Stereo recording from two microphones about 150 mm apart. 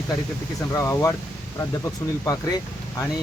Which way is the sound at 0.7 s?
20° left (ahead or behind).